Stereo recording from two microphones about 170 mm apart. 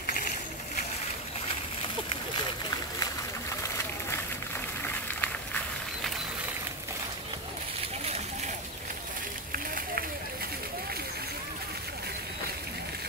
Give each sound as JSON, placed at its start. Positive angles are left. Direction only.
{"t": 4.8, "sound": "run", "side_deg": 10}
{"t": 9.5, "sound": "run", "side_deg": -60}